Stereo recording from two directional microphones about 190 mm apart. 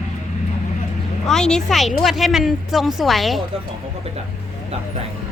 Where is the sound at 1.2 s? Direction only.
5° left (ahead or behind).